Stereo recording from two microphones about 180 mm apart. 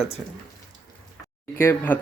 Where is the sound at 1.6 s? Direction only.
15° left (ahead or behind).